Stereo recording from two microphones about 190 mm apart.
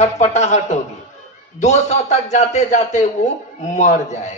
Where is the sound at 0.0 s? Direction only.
35° left (ahead or behind).